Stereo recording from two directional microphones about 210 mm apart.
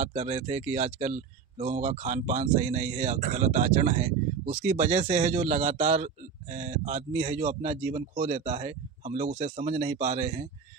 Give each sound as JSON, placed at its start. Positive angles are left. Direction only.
{"t": 0.0, "sound": "speech", "side_deg": -30}